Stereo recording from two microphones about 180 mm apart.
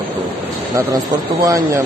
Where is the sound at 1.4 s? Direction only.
20° right (ahead or behind).